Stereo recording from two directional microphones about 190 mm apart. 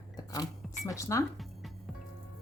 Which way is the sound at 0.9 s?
15° left (ahead or behind).